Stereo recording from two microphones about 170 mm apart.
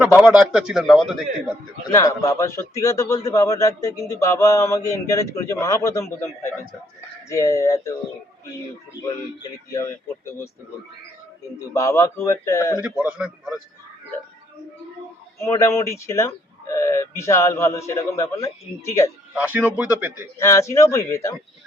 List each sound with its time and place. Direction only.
0.2 s a man's voice: 5° right (ahead or behind)
1.9 s a man's voice: 20° left (ahead or behind)
9.7 s a man's voice: 15° left (ahead or behind)
11.7 s a man's voice: 20° left (ahead or behind)
12.8 s a man's voice: 5° right (ahead or behind)
15.4 s a man's voice: 15° left (ahead or behind)
19.4 s speech: 10° right (ahead or behind)
20.4 s a man's voice: 15° left (ahead or behind)